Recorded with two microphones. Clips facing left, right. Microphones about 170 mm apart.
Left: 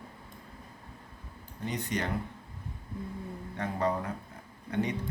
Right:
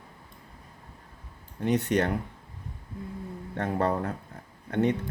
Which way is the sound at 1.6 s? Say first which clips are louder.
Right 9 dB; 70° right (ahead or behind).